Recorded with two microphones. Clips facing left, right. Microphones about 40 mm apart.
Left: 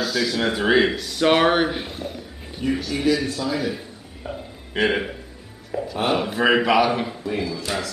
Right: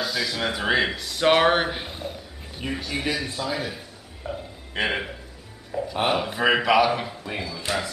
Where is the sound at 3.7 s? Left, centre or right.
Centre.